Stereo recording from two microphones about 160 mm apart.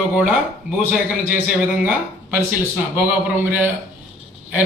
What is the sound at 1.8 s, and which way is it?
A man's voice, 10° right (ahead or behind).